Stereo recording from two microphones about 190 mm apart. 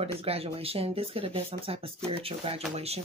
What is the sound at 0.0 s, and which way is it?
Speech, 30° right (ahead or behind).